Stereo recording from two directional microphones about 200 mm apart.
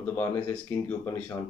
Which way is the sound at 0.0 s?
10° left (ahead or behind).